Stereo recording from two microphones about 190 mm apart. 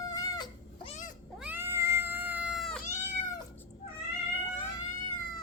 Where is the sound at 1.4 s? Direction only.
10° right (ahead or behind).